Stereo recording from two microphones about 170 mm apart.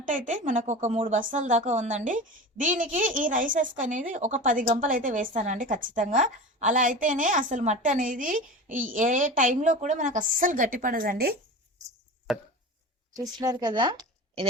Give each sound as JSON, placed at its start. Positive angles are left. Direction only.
{"t": 0.0, "sound": "speech", "side_deg": -50}
{"t": 12.3, "sound": "a sound", "side_deg": 0}
{"t": 13.1, "sound": "speech", "side_deg": -20}